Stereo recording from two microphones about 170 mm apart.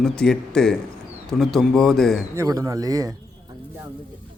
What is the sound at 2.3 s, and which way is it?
Speech, 20° right (ahead or behind).